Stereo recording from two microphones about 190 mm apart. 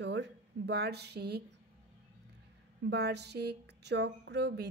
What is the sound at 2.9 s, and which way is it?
A woman's voice, 60° right (ahead or behind).